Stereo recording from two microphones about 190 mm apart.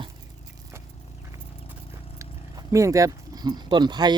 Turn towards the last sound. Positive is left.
turn(degrees=-20)  # may be behind; listen again after turning